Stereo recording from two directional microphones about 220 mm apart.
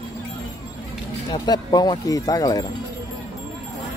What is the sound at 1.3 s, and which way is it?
Speech, 20° left (ahead or behind).